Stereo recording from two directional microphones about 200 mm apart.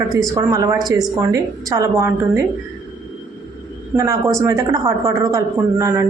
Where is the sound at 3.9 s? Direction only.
15° right (ahead or behind).